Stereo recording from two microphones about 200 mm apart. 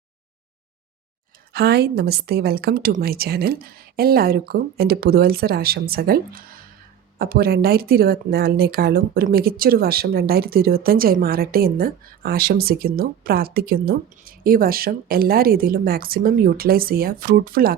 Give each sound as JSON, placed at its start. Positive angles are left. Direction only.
{"t": 1.5, "sound": "speech", "side_deg": -55}